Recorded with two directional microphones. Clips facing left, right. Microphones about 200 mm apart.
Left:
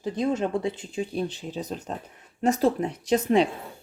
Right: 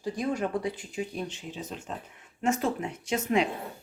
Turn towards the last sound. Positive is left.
turn(degrees=35)  # may be behind; listen again after turning